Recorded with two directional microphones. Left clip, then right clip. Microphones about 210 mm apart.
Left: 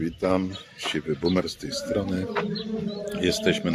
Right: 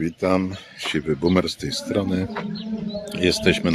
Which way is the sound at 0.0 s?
35° right (ahead or behind).